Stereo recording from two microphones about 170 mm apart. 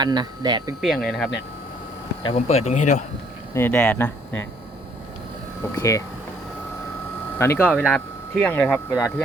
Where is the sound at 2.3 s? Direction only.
40° left (ahead or behind).